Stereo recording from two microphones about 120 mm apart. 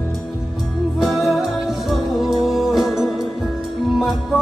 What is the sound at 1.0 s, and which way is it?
Music, centre (ahead or behind).